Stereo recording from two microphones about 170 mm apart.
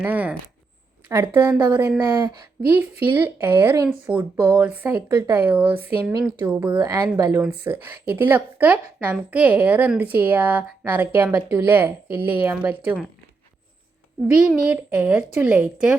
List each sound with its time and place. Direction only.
0.0 s a woman's voice: 10° right (ahead or behind)
14.4 s a woman's voice: 5° right (ahead or behind)